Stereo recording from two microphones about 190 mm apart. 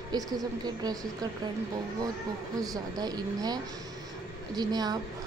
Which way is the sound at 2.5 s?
20° right (ahead or behind).